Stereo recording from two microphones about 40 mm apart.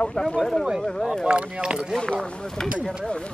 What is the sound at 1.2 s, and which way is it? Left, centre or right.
Speech, right.